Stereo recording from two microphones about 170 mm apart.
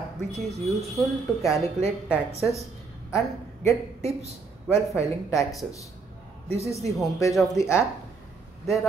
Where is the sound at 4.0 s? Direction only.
40° right (ahead or behind).